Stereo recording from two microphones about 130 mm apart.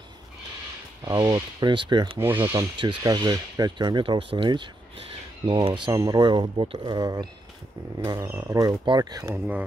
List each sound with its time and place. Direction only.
1.0 s speech: 30° right (ahead or behind)
2.1 s speech: 15° right (ahead or behind)
3.0 s speech: 30° right (ahead or behind)
8.3 s speech: 20° right (ahead or behind)
9.3 s speech: 10° right (ahead or behind)